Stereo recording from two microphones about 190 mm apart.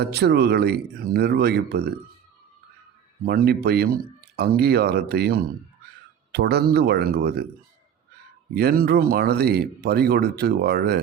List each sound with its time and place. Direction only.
0.0 s speech: 60° right (ahead or behind)
3.2 s speech: 55° right (ahead or behind)
8.5 s speech: 55° right (ahead or behind)